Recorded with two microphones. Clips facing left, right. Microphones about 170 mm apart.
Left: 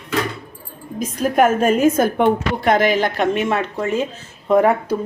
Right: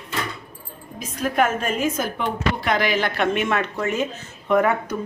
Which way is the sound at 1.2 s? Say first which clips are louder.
Left 6 dB; 40° left (ahead or behind).